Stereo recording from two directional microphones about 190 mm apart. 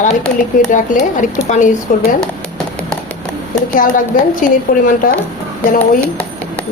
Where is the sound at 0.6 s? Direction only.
45° left (ahead or behind).